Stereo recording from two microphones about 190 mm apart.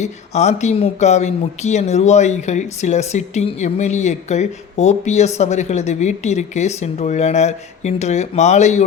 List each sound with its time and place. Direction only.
0.0 s speech: 35° left (ahead or behind)